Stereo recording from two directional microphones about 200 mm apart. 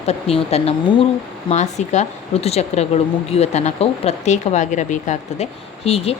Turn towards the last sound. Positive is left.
turn(degrees=30)  # may be behind; listen again after turning